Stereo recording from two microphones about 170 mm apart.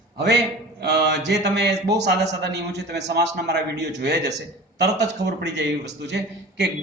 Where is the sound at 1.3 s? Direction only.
80° right.